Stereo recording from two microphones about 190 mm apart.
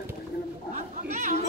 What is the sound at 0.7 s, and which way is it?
Chatter, 40° right (ahead or behind).